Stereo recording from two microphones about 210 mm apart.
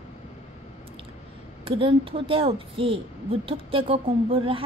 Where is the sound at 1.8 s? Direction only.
25° right (ahead or behind).